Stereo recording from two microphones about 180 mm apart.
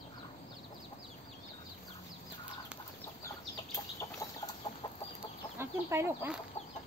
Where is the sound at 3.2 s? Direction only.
15° left (ahead or behind).